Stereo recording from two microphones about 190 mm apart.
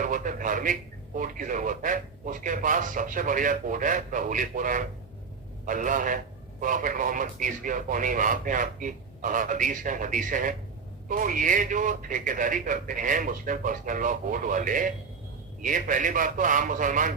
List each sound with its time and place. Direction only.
0.0 s a man's voice: 45° right (ahead or behind)